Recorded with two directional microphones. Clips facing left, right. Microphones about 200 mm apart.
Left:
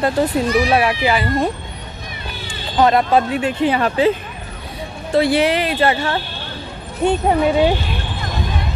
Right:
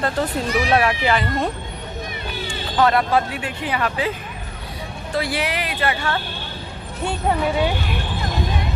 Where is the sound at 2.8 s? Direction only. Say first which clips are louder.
Left 4 dB; 20° left (ahead or behind).